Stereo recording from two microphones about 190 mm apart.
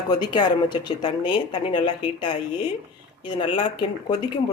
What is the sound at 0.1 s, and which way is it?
Speech, 25° left (ahead or behind).